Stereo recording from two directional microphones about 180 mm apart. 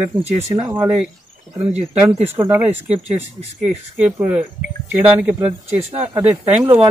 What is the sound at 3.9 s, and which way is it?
Speech, 10° right (ahead or behind).